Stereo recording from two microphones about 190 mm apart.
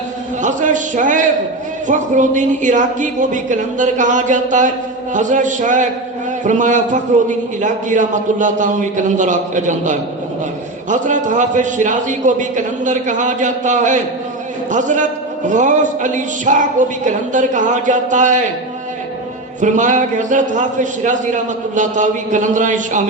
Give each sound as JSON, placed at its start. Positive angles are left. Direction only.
{"t": 0.4, "sound": "a man's voice", "side_deg": -40}
{"t": 19.6, "sound": "a man's voice", "side_deg": -40}